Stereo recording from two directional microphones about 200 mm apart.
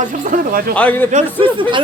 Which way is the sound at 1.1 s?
30° right (ahead or behind).